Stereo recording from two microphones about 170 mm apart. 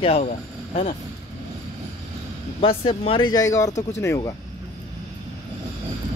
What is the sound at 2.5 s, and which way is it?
Speech, 35° left (ahead or behind).